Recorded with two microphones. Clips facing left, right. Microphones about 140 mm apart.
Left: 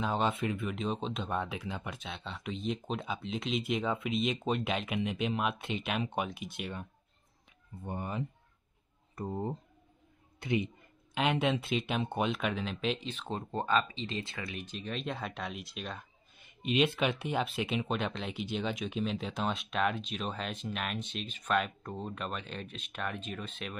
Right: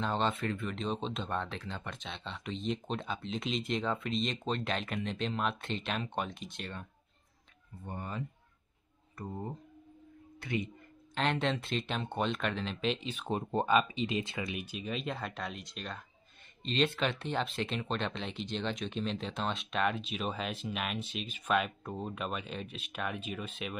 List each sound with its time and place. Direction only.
0.0 s speech: 10° left (ahead or behind)
11.1 s speech: 5° left (ahead or behind)
13.1 s speech: 15° right (ahead or behind)